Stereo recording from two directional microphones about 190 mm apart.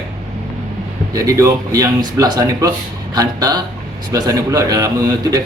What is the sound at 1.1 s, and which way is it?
A man's voice, 15° right (ahead or behind).